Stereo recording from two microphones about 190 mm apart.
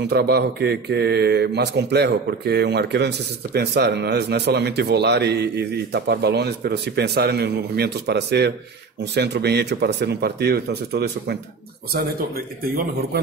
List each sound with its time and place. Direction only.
0.0 s a man's voice: 55° right (ahead or behind)